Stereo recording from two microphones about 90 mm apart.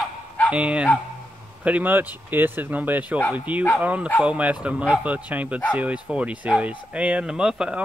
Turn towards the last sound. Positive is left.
turn(degrees=-10)  # may be behind; listen again after turning